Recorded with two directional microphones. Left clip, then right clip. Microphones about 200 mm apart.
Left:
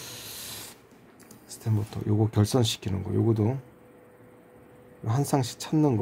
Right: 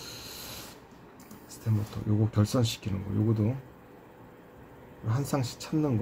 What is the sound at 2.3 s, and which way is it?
Speech, 60° left (ahead or behind).